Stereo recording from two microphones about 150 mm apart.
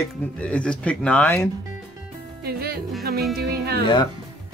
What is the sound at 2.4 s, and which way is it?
Music, 90° right.